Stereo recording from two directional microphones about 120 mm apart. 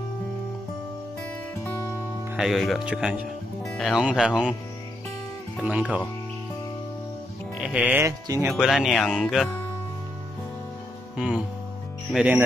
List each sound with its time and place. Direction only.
1.6 s music: 20° left (ahead or behind)
2.3 s speech: centre (ahead or behind)
5.6 s speech: 10° right (ahead or behind)
7.5 s music: 10° right (ahead or behind)
8.0 s speech: 20° right (ahead or behind)
8.5 s speech: 5° right (ahead or behind)
11.1 s music: 5° right (ahead or behind)
12.1 s speech: 10° right (ahead or behind)